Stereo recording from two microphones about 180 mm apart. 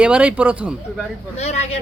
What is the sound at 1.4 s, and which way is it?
Speech, 40° left (ahead or behind).